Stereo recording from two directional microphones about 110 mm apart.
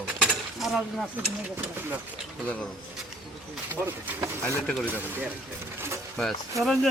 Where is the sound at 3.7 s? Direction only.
20° right (ahead or behind).